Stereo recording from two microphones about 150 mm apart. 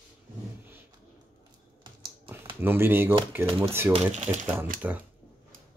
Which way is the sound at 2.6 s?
15° right (ahead or behind).